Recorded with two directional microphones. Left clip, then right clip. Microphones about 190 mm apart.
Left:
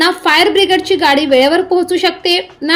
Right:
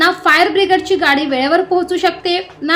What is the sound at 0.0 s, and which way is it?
A woman's voice, 15° left (ahead or behind).